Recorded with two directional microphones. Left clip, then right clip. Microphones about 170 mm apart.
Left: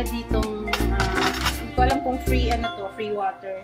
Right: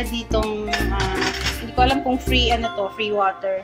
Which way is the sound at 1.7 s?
Centre (ahead or behind).